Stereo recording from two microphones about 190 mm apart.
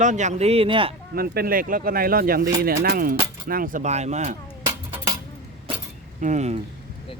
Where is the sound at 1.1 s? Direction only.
55° right (ahead or behind); by 4.4 s 35° right (ahead or behind).